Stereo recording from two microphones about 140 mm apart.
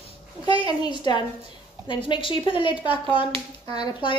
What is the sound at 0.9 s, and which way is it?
Speech, 35° left (ahead or behind).